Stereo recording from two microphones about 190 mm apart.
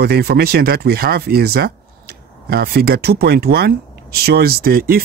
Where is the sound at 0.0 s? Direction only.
55° right (ahead or behind).